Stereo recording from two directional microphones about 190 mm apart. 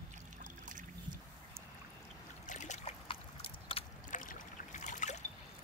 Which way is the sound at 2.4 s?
40° left (ahead or behind).